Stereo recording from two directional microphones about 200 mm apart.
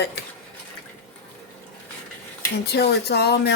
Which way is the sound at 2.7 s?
55° left (ahead or behind).